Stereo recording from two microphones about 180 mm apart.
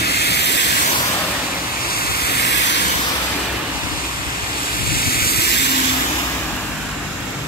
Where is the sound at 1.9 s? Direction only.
55° left (ahead or behind).